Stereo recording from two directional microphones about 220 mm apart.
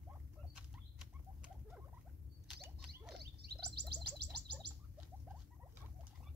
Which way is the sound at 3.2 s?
45° right (ahead or behind).